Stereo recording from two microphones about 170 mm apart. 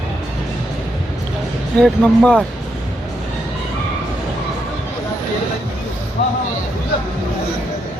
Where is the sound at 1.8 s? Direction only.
Centre (ahead or behind).